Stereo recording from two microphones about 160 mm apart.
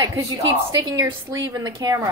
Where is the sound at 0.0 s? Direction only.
25° right (ahead or behind).